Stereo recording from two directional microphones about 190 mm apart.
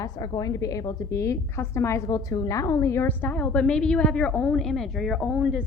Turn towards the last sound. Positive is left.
turn(degrees=-5)  # may be behind; listen again after turning